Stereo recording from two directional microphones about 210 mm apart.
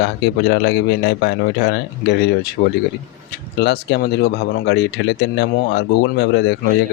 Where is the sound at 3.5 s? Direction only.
55° left (ahead or behind).